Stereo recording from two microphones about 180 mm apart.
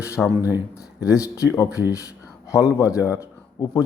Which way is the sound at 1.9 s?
15° left (ahead or behind).